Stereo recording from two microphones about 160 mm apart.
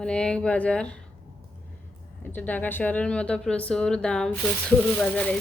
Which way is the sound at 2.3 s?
10° left (ahead or behind).